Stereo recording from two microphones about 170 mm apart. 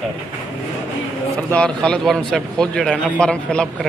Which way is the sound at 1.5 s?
5° left (ahead or behind).